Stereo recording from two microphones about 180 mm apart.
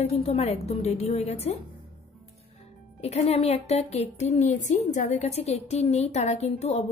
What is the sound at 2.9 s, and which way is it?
A woman's voice, 35° left (ahead or behind).